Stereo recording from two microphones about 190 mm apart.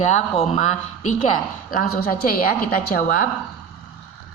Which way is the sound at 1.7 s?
50° left (ahead or behind).